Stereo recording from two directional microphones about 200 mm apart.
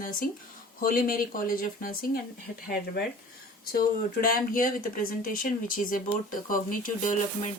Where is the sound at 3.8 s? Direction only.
45° left (ahead or behind).